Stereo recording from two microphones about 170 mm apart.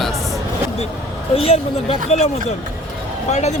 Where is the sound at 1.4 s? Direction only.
35° left (ahead or behind).